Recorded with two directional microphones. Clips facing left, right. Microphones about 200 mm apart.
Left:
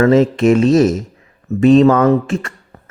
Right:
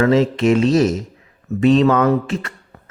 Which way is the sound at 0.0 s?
50° left (ahead or behind).